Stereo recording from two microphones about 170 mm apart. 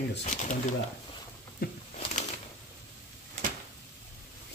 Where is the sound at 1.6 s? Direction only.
60° left (ahead or behind).